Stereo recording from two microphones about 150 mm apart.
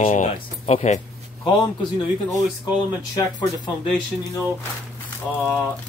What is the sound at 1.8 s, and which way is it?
Speech, 30° left (ahead or behind).